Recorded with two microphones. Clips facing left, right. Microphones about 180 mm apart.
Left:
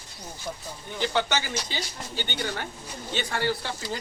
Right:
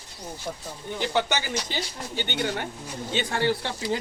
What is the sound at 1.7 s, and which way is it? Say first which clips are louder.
Speech: right 2 dB; 50° right (ahead or behind).